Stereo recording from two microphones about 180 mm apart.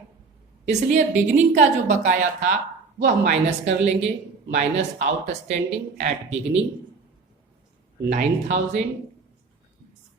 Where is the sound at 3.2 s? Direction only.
40° right (ahead or behind).